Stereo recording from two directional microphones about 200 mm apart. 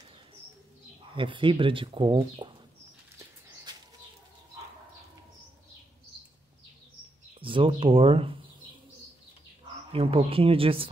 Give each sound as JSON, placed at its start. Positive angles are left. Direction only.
{"t": 1.1, "sound": "speech", "side_deg": -25}
{"t": 7.3, "sound": "speech", "side_deg": -25}
{"t": 9.9, "sound": "speech", "side_deg": -30}